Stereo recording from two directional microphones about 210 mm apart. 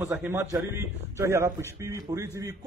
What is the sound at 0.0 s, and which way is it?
A man's voice, 10° right (ahead or behind).